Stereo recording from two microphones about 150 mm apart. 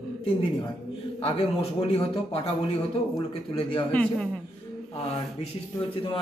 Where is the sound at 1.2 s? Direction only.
40° left (ahead or behind).